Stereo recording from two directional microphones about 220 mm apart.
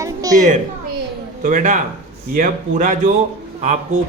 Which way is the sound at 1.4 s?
35° right (ahead or behind).